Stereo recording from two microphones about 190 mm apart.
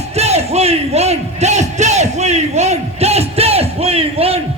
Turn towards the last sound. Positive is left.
turn(degrees=-30)  # may be behind; listen again after turning